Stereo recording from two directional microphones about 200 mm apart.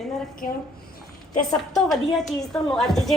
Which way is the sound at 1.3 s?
40° left (ahead or behind).